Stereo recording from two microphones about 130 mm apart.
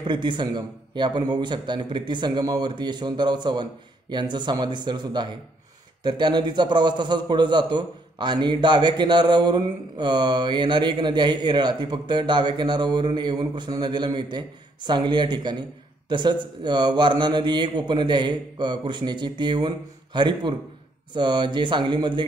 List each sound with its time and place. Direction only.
0.0 s a man's voice: 35° right (ahead or behind)